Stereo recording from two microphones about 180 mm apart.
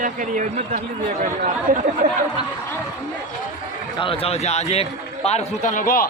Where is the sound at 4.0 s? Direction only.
30° left (ahead or behind).